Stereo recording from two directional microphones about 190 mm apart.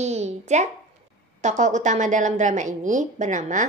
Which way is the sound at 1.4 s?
40° right (ahead or behind).